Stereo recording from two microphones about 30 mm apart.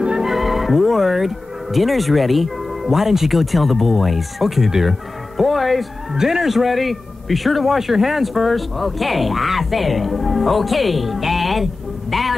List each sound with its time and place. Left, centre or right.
0.3 s speech: centre
5.4 s a man's voice: centre
6.1 s speech: centre
6.4 s a man's voice: centre